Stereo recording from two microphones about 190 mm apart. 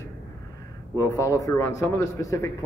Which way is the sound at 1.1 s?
15° left (ahead or behind).